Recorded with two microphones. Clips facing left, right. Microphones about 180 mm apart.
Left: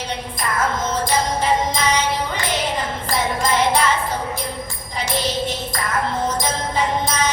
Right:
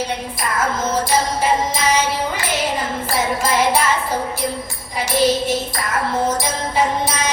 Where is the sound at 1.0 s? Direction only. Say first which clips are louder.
Even; 5° right (ahead or behind).